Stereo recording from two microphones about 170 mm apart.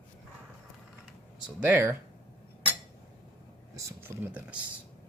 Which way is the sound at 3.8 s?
15° right (ahead or behind).